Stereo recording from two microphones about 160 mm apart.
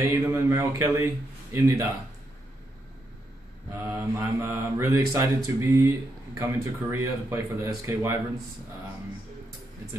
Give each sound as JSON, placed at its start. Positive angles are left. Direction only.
{"t": 0.0, "sound": "speech", "side_deg": -20}
{"t": 3.7, "sound": "speech", "side_deg": -15}